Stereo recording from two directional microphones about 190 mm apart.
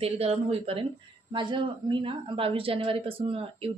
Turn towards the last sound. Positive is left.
turn(degrees=-30)  # may be behind; listen again after turning